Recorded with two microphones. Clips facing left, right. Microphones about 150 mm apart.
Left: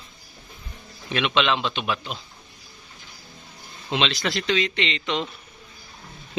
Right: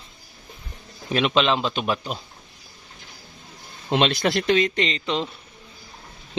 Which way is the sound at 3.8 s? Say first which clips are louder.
Right 5 dB; 50° right (ahead or behind).